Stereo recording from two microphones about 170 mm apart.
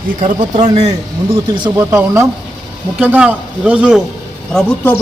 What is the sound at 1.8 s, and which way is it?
Speech, 15° right (ahead or behind).